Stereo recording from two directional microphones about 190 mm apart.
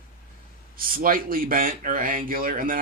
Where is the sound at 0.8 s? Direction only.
50° right (ahead or behind).